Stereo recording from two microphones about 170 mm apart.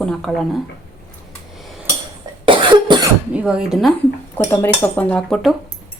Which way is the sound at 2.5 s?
30° right (ahead or behind).